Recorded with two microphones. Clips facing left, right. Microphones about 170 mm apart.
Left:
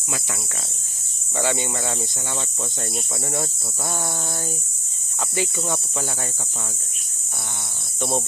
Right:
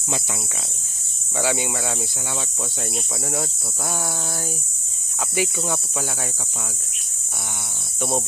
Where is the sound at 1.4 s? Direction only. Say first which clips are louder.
Right 1 dB; 5° right (ahead or behind).